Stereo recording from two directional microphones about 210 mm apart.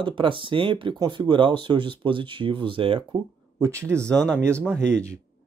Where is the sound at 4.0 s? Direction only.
5° left (ahead or behind).